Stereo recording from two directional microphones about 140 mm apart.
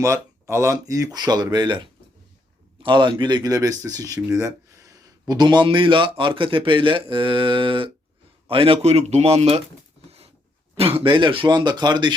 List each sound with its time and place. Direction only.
0.0 s a man's voice: 20° right (ahead or behind); by 9.6 s 50° right (ahead or behind)
10.8 s a man's voice: 45° right (ahead or behind)